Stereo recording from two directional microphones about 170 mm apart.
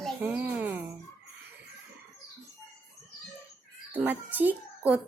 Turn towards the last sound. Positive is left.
turn(degrees=-10)  # may be behind; listen again after turning